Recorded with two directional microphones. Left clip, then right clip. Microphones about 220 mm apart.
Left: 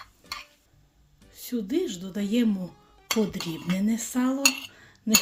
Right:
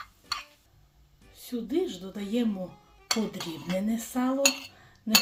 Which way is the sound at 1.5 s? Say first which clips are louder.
Left 2 dB; 30° left (ahead or behind).